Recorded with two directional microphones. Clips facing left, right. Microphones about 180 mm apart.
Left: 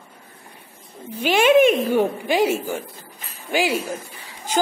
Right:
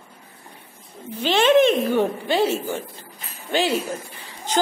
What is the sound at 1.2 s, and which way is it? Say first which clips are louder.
Speech: left 1 dB; 10° left (ahead or behind).